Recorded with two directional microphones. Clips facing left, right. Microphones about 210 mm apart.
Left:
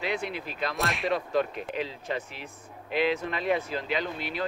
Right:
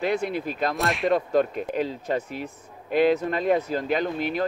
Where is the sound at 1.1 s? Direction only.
45° right (ahead or behind).